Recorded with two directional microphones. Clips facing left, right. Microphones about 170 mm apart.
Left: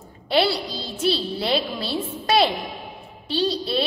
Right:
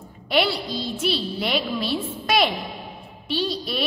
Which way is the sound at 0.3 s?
30° left (ahead or behind).